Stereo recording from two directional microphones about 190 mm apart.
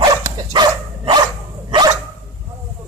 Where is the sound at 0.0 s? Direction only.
20° right (ahead or behind).